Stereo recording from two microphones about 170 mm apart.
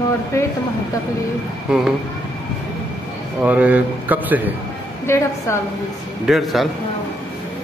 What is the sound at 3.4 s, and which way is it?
A man's voice, 10° right (ahead or behind).